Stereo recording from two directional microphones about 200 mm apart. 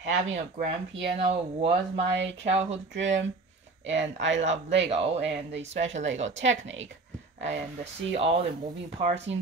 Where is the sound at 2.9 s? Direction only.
65° right (ahead or behind).